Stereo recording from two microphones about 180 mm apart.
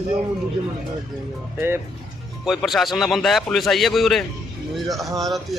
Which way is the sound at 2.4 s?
Centre (ahead or behind).